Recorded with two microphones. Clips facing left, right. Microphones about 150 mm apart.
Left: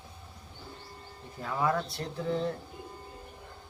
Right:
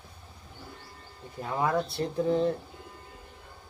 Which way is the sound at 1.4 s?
25° right (ahead or behind).